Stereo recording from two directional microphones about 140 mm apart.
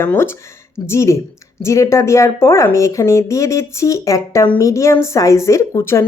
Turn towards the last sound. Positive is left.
turn(degrees=20)  # may be behind; listen again after turning